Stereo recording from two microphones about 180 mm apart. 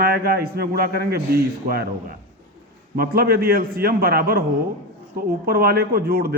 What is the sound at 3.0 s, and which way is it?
A man's voice, 55° right (ahead or behind).